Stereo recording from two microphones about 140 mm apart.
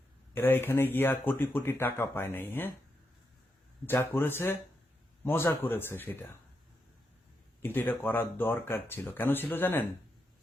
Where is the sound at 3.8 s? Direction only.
15° left (ahead or behind).